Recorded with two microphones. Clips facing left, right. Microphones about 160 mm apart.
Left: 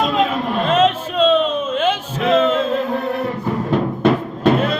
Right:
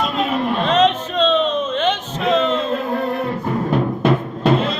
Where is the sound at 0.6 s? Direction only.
5° left (ahead or behind).